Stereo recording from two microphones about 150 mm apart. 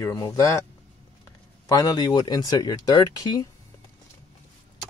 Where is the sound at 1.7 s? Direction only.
25° left (ahead or behind).